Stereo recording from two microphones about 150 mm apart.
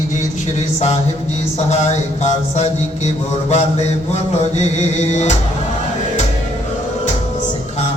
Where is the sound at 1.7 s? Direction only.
50° left (ahead or behind).